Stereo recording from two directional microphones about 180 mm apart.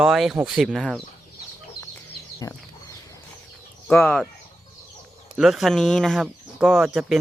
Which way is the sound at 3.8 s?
5° left (ahead or behind).